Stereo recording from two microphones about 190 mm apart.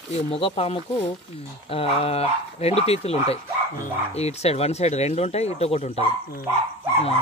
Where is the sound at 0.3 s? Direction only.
30° left (ahead or behind).